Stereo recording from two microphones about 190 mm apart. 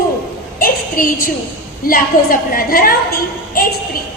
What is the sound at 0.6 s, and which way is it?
A woman's voice, 45° left (ahead or behind).